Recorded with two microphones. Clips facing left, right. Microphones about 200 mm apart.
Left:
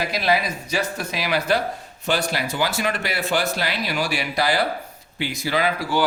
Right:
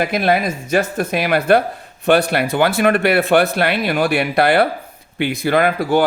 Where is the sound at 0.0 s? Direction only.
55° right (ahead or behind).